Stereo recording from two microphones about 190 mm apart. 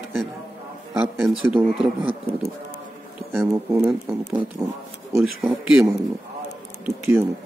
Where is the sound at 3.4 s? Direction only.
15° right (ahead or behind).